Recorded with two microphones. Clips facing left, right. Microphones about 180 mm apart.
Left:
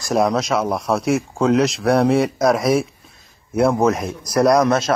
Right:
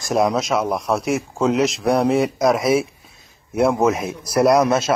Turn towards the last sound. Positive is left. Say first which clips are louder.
# even
turn(degrees=-5)  # may be behind; listen again after turning